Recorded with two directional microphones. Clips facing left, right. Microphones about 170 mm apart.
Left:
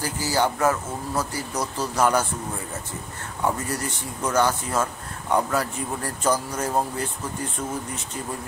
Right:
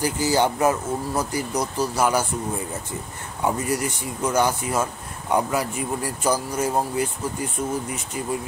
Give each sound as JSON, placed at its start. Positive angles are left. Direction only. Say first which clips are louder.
{"t": 0.0, "sound": "speech", "louder": "right 3 dB", "side_deg": -20}
{"t": 3.4, "sound": "speech", "louder": "right 3 dB", "side_deg": -10}
{"t": 8.2, "sound": "speech", "louder": "right 5 dB", "side_deg": -10}